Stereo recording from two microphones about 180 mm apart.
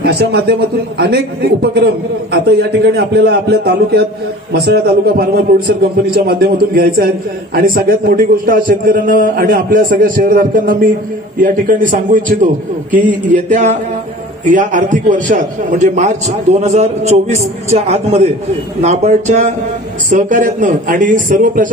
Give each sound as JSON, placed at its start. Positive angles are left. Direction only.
{"t": 0.0, "sound": "a man's voice", "side_deg": -60}